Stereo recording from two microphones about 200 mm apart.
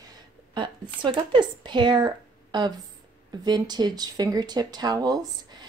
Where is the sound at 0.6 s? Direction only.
25° right (ahead or behind).